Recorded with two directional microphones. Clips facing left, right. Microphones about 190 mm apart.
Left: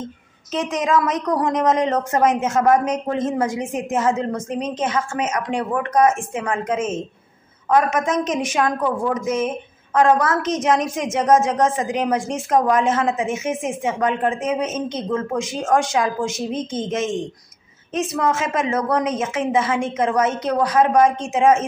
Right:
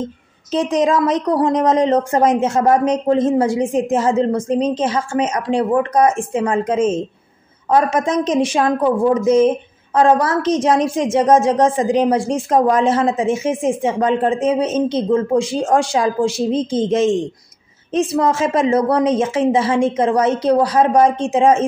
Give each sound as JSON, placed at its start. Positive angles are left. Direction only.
{"t": 0.5, "sound": "a woman's voice", "side_deg": -30}